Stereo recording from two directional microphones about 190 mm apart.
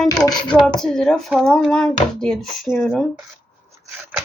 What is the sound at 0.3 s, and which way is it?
Speech, 25° left (ahead or behind).